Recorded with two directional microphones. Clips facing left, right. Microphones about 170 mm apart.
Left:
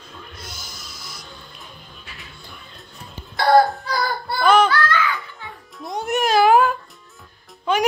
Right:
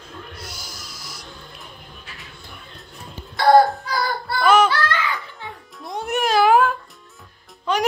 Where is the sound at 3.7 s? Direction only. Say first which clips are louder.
Even; 5° right (ahead or behind).